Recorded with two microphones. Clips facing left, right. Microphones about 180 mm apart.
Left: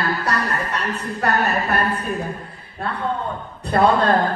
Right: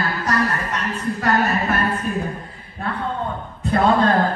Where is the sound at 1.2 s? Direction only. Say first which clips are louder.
Even; 65° left (ahead or behind).